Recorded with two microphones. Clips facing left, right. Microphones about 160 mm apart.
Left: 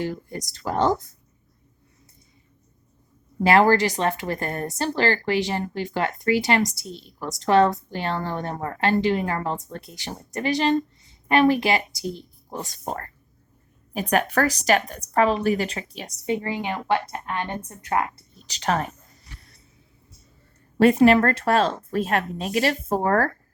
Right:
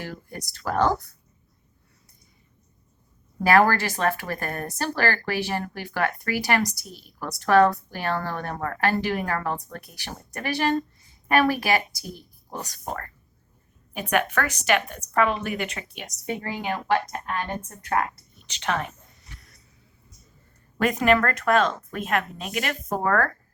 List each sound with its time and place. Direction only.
0.0 s speech: 20° left (ahead or behind)
3.4 s a woman's voice: 20° left (ahead or behind)
16.2 s speech: 20° left (ahead or behind)
18.3 s speech: 40° left (ahead or behind)
20.7 s a woman's voice: 30° left (ahead or behind)